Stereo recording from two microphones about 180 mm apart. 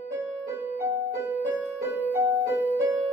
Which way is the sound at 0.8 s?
15° right (ahead or behind).